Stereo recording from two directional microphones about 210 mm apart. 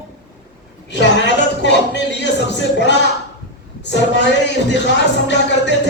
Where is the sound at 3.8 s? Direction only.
55° left (ahead or behind).